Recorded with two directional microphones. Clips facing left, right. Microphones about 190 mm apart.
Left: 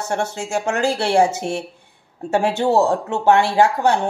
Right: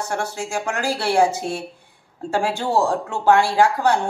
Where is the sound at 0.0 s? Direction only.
25° left (ahead or behind).